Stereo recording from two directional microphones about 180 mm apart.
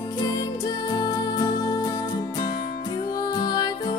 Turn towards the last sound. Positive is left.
turn(degrees=20)  # may be behind; listen again after turning